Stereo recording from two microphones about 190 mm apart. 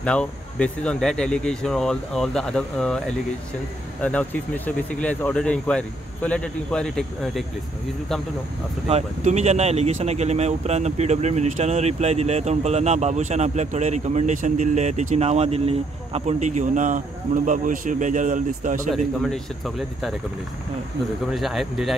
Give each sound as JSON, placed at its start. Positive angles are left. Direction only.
{"t": 0.0, "sound": "speech", "side_deg": 5}
{"t": 8.8, "sound": "speech", "side_deg": -35}
{"t": 19.2, "sound": "speech", "side_deg": 0}
{"t": 21.3, "sound": "speech", "side_deg": 0}